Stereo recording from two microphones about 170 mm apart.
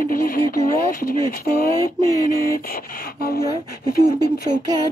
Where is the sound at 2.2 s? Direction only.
55° left (ahead or behind).